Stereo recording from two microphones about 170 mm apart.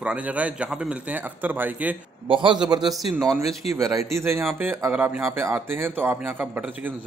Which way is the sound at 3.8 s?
20° right (ahead or behind).